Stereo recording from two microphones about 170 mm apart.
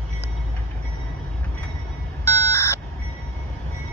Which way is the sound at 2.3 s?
15° left (ahead or behind).